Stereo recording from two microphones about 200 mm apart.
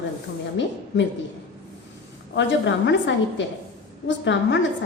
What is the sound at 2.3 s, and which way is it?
A woman's voice, 65° left (ahead or behind).